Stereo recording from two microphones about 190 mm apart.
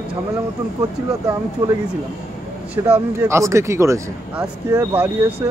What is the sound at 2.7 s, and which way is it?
Speech, 10° right (ahead or behind).